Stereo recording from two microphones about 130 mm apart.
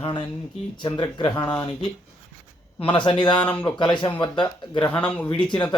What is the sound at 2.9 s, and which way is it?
Speech, 40° left (ahead or behind).